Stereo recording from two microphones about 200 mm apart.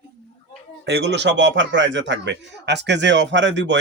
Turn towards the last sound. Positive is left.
turn(degrees=-60)  # may be behind; listen again after turning